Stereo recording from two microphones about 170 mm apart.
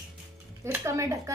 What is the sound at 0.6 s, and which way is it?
Speech, 15° right (ahead or behind).